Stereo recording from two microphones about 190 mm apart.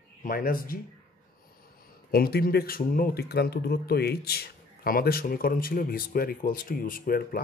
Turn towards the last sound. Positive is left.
turn(degrees=50)  # may be behind; listen again after turning